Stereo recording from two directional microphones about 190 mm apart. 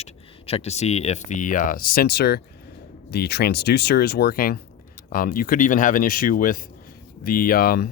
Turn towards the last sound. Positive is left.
turn(degrees=50)  # may be behind; listen again after turning